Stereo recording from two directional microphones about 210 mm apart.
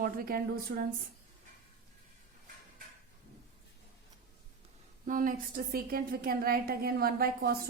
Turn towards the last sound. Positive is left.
turn(degrees=-45)  # may be behind; listen again after turning